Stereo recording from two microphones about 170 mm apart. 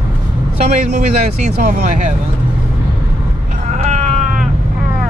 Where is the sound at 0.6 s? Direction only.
45° right (ahead or behind).